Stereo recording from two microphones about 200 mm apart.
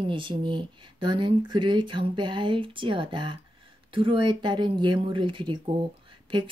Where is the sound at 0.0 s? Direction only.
25° right (ahead or behind).